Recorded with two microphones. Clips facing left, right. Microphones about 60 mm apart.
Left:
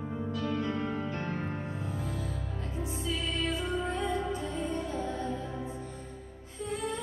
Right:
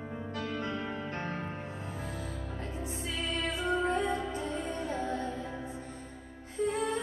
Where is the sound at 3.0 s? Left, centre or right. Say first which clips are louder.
Left 1 dB; right.